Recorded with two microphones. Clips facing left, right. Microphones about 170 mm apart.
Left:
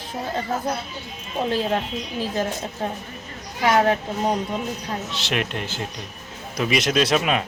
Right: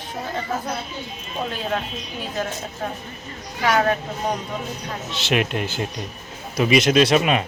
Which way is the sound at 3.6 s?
25° left (ahead or behind).